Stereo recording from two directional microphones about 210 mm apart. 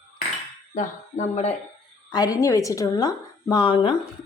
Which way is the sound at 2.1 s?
15° left (ahead or behind).